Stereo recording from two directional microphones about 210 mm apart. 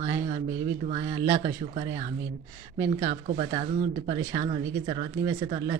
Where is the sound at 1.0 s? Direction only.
15° right (ahead or behind).